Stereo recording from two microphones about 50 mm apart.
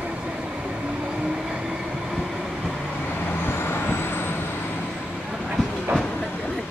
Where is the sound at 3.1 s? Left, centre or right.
Left.